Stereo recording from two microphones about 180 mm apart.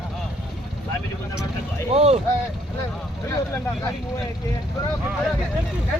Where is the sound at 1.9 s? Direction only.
35° right (ahead or behind).